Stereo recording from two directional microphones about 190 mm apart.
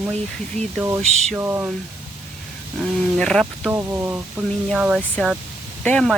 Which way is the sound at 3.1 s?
Centre (ahead or behind).